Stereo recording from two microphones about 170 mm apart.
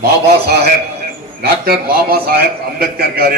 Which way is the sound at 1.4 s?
65° right (ahead or behind).